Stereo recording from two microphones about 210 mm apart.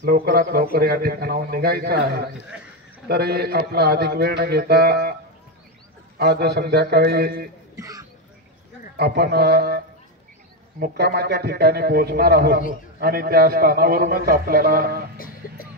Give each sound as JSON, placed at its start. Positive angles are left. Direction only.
{"t": 0.0, "sound": "a man's voice", "side_deg": -45}
{"t": 6.1, "sound": "a man's voice", "side_deg": -50}
{"t": 7.7, "sound": "speech", "side_deg": -15}
{"t": 8.9, "sound": "a man's voice", "side_deg": -50}
{"t": 10.8, "sound": "a man's voice", "side_deg": -50}